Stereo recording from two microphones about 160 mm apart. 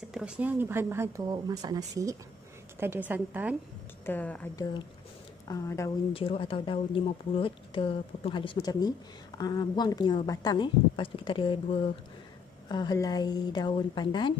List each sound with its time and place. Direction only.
0.1 s speech: 5° right (ahead or behind)
4.0 s speech: 10° left (ahead or behind)
5.5 s a woman's voice: 20° left (ahead or behind)
6.1 s a woman's voice: 35° left (ahead or behind)
12.6 s a woman's voice: 25° left (ahead or behind)